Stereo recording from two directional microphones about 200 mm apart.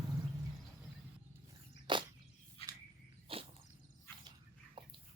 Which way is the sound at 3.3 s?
25° right (ahead or behind).